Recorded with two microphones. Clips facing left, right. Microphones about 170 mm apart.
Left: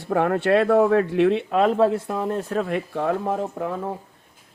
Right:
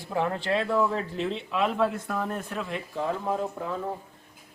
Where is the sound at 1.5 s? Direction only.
45° left (ahead or behind).